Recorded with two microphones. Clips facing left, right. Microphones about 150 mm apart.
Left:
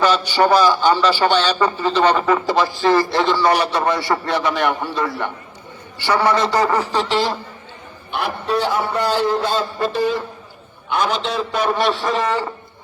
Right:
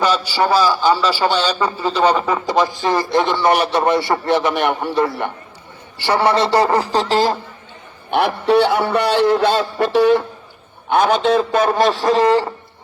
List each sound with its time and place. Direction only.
0.0 s a man's voice: 10° right (ahead or behind); by 6.8 s 30° right (ahead or behind)
6.9 s a man's voice: 40° right (ahead or behind)
8.1 s a man's voice: 75° right (ahead or behind)
10.9 s a man's voice: 55° right (ahead or behind); by 12.5 s 35° right (ahead or behind)